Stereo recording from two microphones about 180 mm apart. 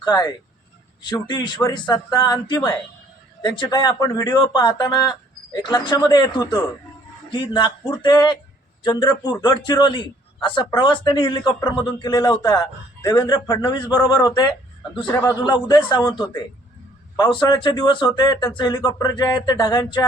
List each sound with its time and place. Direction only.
0.0 s a man's voice: 20° left (ahead or behind)